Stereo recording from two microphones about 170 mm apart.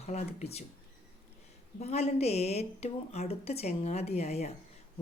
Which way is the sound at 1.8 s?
40° left (ahead or behind).